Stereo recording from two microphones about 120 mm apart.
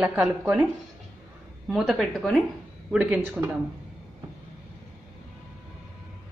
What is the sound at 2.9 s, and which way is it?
Speech, 10° right (ahead or behind).